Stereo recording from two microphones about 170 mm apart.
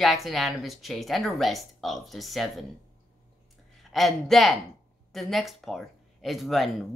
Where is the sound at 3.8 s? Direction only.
Centre (ahead or behind).